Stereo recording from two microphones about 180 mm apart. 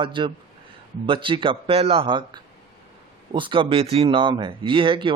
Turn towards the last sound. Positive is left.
turn(degrees=-30)  # may be behind; listen again after turning